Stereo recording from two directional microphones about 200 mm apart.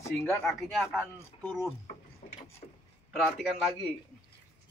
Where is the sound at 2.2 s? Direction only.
45° left (ahead or behind).